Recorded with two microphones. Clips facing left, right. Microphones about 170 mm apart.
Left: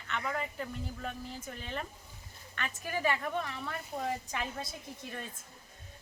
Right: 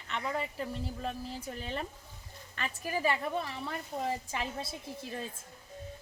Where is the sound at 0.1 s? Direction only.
30° right (ahead or behind).